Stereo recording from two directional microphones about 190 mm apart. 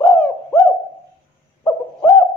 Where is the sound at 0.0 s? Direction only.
15° left (ahead or behind).